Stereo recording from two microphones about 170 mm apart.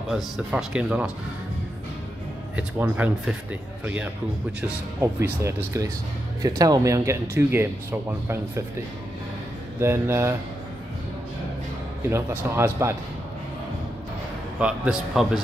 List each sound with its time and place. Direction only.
0.1 s speech: 5° right (ahead or behind)
2.5 s speech: 10° right (ahead or behind)
9.8 s speech: 15° right (ahead or behind)
12.1 s speech: 10° right (ahead or behind)
14.6 s speech: 5° right (ahead or behind)